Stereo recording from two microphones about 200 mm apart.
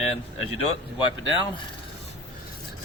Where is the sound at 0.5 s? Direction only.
30° left (ahead or behind).